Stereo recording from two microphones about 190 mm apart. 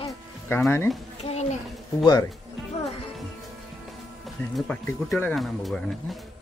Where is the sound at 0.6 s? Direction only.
10° left (ahead or behind).